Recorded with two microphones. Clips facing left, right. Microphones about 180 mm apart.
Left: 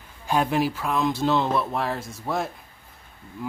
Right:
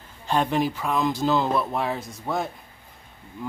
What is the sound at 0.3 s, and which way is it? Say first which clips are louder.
Speech: even; 5° left (ahead or behind).